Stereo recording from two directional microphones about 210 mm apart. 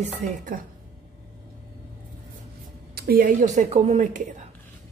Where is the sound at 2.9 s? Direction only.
45° right (ahead or behind).